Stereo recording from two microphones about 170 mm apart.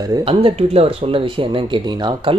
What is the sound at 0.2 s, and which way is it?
Speech, 35° right (ahead or behind).